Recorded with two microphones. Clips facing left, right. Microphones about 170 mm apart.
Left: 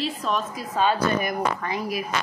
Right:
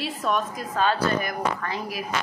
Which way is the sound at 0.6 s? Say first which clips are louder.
Left 1 dB; 10° left (ahead or behind).